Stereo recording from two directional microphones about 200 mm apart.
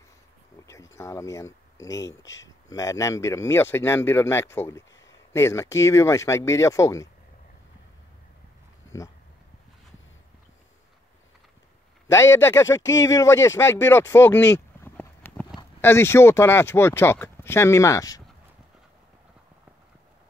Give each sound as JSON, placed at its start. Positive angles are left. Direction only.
{"t": 0.7, "sound": "speech", "side_deg": 15}
{"t": 12.1, "sound": "speech", "side_deg": 15}